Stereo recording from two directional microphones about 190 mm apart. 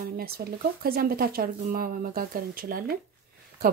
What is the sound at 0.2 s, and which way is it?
Speech, 55° right (ahead or behind).